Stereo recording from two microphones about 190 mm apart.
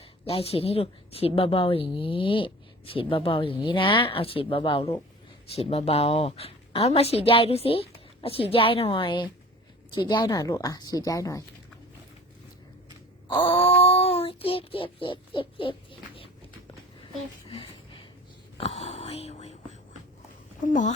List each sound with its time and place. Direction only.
0.3 s a woman's voice: 30° left (ahead or behind)
13.2 s wail: 25° left (ahead or behind)
13.8 s speech: 30° left (ahead or behind)
18.5 s speech: 35° left (ahead or behind)
20.7 s a woman's voice: 40° left (ahead or behind)